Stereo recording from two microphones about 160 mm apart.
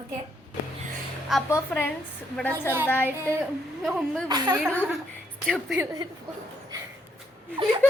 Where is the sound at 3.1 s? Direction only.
15° right (ahead or behind).